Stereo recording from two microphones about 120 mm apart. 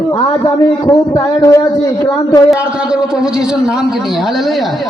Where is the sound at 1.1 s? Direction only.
25° left (ahead or behind).